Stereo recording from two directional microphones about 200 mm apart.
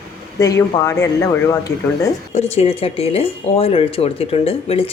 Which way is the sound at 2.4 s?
30° left (ahead or behind).